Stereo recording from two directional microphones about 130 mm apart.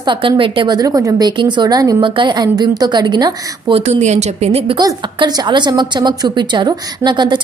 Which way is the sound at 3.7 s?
60° right (ahead or behind).